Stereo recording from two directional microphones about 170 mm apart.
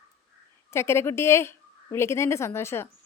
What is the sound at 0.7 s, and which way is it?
A woman's voice, 15° left (ahead or behind).